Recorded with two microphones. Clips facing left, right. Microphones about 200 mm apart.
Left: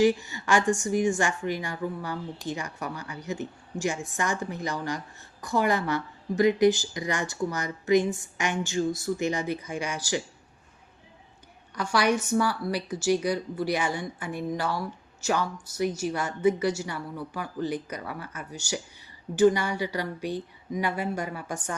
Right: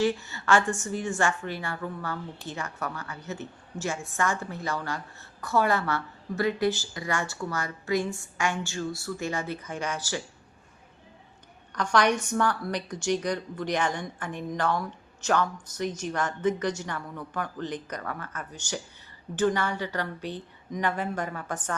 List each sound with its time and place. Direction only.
0.0 s a woman's voice: 15° left (ahead or behind)
11.7 s a woman's voice: 10° left (ahead or behind)